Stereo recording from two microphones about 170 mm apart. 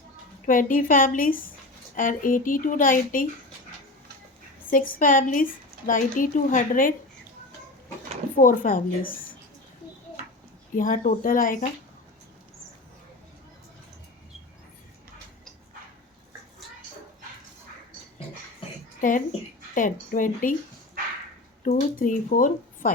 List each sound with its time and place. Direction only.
0.4 s speech: 50° left (ahead or behind)
4.7 s speech: 55° left (ahead or behind)
8.4 s speech: 55° left (ahead or behind)
10.8 s speech: 50° left (ahead or behind)
18.9 s a woman's voice: 50° left (ahead or behind)
21.6 s speech: 50° left (ahead or behind)